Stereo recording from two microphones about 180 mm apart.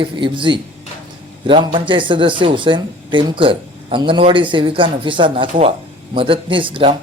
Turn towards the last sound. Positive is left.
turn(degrees=-30)  # may be behind; listen again after turning